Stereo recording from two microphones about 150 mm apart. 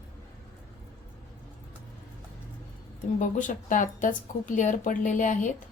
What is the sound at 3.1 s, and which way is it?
A woman's voice, 60° left (ahead or behind).